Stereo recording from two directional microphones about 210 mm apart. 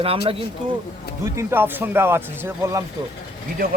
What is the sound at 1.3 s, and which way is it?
Speech, 10° right (ahead or behind).